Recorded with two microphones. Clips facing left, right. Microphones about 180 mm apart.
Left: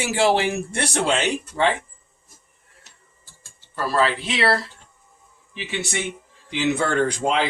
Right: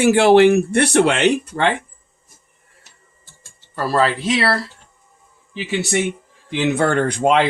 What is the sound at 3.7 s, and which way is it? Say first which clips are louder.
Speech: right 3 dB; 40° right (ahead or behind).